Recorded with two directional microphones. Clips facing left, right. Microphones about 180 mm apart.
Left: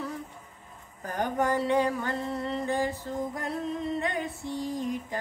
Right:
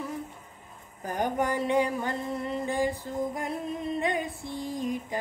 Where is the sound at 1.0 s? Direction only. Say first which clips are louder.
Even; 15° right (ahead or behind).